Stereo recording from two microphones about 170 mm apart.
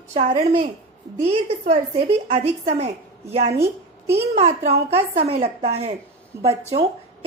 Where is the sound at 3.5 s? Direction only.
15° right (ahead or behind).